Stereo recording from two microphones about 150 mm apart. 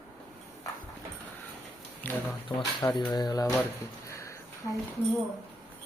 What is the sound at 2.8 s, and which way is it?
Speech, 25° left (ahead or behind).